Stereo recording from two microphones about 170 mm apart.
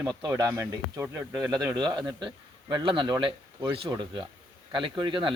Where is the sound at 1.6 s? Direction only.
20° right (ahead or behind).